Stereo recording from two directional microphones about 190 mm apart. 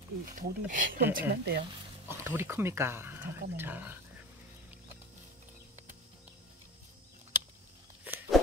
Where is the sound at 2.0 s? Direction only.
10° right (ahead or behind).